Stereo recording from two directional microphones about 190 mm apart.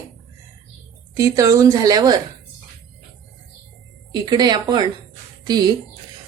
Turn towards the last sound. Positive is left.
turn(degrees=-20)  # may be behind; listen again after turning